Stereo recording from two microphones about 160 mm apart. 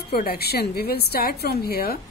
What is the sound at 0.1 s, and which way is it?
A woman's voice, 75° left (ahead or behind).